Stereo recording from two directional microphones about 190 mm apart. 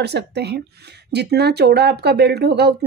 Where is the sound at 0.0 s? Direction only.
60° right (ahead or behind).